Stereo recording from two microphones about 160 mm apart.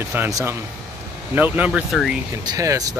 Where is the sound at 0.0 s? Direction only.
15° right (ahead or behind).